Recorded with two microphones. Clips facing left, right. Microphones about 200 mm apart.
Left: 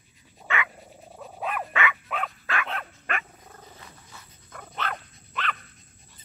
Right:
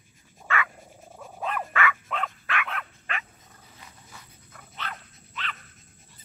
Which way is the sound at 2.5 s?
30° left (ahead or behind).